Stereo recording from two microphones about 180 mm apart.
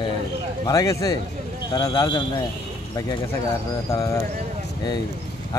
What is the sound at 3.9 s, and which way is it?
Speech, 20° left (ahead or behind).